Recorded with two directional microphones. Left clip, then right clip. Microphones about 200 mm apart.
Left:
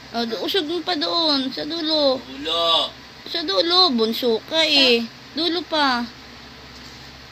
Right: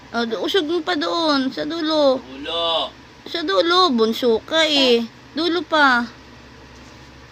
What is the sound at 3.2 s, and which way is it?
Speech, 20° right (ahead or behind).